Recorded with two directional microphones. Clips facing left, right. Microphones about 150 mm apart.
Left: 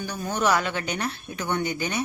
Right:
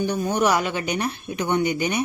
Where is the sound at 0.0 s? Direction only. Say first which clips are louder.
Right 5 dB; 20° right (ahead or behind).